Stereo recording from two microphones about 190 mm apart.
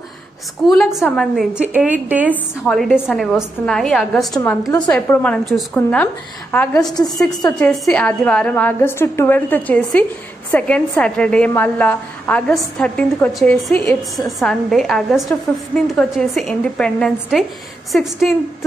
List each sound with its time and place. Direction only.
0.7 s a woman's voice: centre (ahead or behind)
2.3 s a woman's voice: 5° left (ahead or behind)
4.4 s a woman's voice: 15° left (ahead or behind)
4.7 s a woman's voice: 5° left (ahead or behind)